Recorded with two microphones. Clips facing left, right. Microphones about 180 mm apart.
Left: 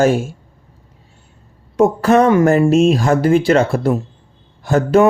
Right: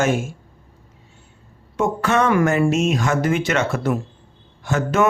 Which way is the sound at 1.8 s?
35° left (ahead or behind).